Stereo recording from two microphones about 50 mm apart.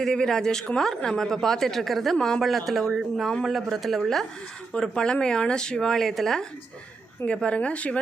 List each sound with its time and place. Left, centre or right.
0.0 s speech: centre
4.7 s speech: centre
7.4 s speech: left